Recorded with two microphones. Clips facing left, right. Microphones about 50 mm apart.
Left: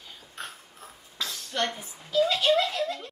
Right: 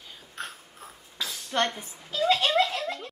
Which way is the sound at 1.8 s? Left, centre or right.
Right.